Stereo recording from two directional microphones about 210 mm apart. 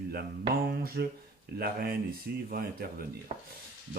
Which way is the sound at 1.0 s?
55° right (ahead or behind).